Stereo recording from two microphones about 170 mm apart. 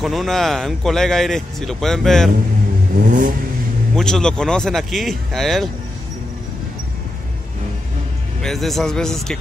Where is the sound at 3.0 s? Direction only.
55° right (ahead or behind).